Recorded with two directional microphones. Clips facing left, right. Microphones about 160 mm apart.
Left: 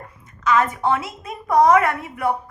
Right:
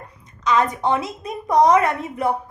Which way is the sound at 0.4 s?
20° right (ahead or behind).